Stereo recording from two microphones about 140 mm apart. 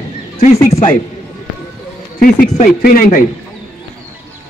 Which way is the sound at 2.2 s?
90° left.